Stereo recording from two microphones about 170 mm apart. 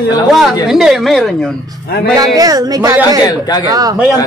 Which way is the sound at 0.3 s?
Centre (ahead or behind).